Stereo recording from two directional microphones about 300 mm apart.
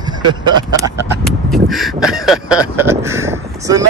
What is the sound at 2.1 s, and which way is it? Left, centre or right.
Speech, centre.